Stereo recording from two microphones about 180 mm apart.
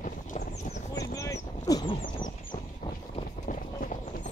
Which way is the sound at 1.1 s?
20° left (ahead or behind).